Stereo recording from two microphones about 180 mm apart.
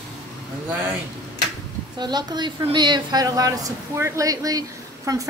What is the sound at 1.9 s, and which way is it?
A woman's voice, 25° right (ahead or behind).